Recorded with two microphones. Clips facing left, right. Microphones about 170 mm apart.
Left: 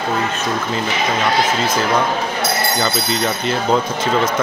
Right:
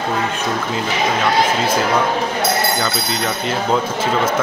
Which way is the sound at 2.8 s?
Centre (ahead or behind).